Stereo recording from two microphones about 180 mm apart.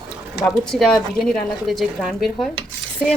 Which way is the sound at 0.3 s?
Centre (ahead or behind).